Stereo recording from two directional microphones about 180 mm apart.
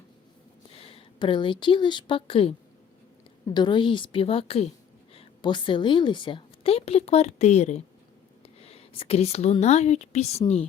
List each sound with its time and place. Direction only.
0.7 s a woman's voice: 35° left (ahead or behind)